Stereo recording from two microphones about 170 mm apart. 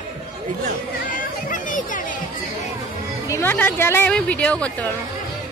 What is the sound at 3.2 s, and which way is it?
Speech, 15° left (ahead or behind).